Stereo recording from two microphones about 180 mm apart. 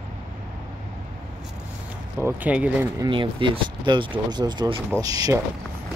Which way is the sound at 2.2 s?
10° right (ahead or behind).